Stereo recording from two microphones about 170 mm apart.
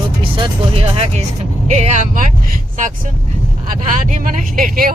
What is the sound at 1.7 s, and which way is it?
Speech, 45° right (ahead or behind).